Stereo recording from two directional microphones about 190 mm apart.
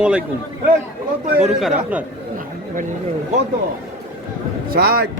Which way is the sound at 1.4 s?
5° right (ahead or behind).